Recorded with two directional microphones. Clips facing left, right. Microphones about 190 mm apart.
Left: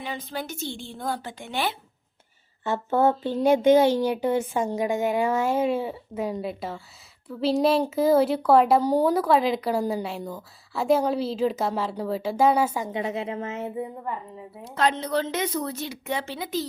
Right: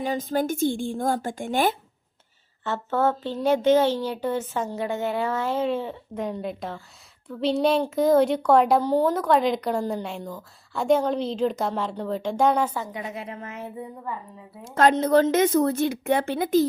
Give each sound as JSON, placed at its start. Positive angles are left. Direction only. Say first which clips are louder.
{"t": 0.0, "sound": "speech", "louder": "right 8 dB", "side_deg": -45}
{"t": 2.6, "sound": "speech", "louder": "left 2 dB", "side_deg": 10}
{"t": 12.9, "sound": "a woman's voice", "louder": "left 5 dB", "side_deg": 25}
{"t": 14.8, "sound": "speech", "louder": "right 6 dB", "side_deg": -45}